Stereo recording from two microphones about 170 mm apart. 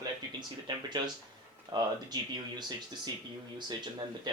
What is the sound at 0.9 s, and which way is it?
Speech, 25° right (ahead or behind).